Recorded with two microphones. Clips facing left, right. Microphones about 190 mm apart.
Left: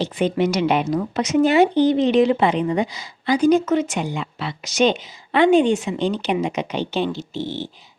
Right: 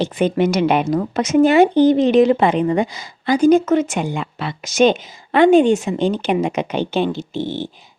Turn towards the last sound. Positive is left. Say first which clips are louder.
# right 4 dB
turn(degrees=-55)  # may be behind; listen again after turning